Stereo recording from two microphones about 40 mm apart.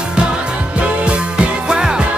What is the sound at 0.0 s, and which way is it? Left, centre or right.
Music, right.